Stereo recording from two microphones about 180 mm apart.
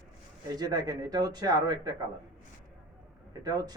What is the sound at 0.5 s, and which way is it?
Speech, 20° right (ahead or behind).